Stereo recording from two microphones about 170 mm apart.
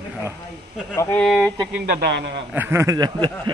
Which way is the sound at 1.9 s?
75° right (ahead or behind).